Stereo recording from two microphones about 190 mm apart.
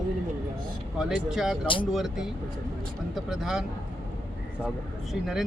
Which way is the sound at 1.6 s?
25° left (ahead or behind).